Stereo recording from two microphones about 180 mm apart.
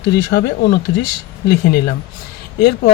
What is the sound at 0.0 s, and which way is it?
Speech, 70° left (ahead or behind).